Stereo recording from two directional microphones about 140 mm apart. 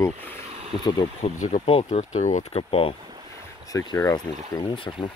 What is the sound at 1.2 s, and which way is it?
Speech, 60° left (ahead or behind).